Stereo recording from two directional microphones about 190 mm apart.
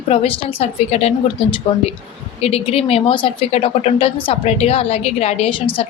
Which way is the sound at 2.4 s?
30° left (ahead or behind).